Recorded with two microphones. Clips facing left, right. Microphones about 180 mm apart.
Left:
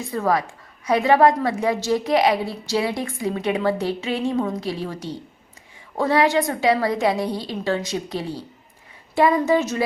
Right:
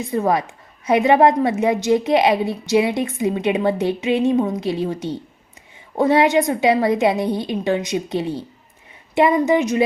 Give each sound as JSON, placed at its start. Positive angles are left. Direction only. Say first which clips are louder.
{"t": 0.1, "sound": "a woman's voice", "louder": "right 2 dB", "side_deg": -20}